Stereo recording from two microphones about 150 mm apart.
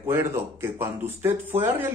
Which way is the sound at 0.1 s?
15° right (ahead or behind).